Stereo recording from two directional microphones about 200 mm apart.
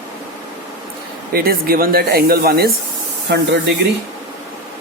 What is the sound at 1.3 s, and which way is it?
Speech, 50° right (ahead or behind).